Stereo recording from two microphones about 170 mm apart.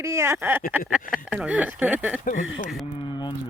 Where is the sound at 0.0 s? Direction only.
15° right (ahead or behind).